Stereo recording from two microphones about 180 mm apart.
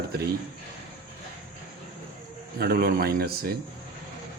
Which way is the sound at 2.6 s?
60° right (ahead or behind).